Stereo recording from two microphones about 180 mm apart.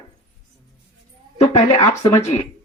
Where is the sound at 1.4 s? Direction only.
20° left (ahead or behind).